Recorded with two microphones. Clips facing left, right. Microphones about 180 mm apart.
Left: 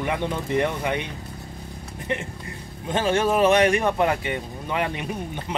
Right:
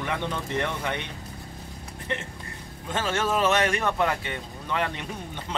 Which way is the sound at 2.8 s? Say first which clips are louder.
Left 6 dB; 15° left (ahead or behind).